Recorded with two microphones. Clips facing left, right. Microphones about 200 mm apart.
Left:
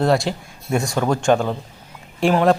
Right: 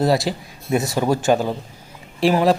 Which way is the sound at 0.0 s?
5° right (ahead or behind).